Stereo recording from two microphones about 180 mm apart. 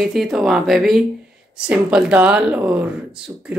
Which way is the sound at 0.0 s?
Centre (ahead or behind).